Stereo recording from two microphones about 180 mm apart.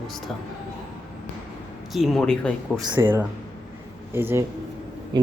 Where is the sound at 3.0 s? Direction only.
10° right (ahead or behind).